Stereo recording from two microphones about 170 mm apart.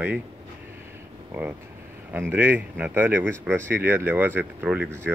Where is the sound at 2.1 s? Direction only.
10° right (ahead or behind).